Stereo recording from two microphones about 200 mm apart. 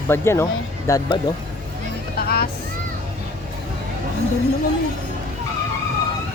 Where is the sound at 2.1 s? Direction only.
50° left (ahead or behind).